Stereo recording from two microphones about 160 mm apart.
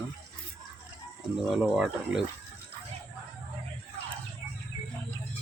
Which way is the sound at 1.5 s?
Centre (ahead or behind).